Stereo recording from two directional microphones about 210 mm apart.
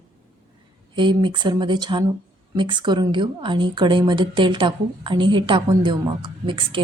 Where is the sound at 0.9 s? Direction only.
20° right (ahead or behind).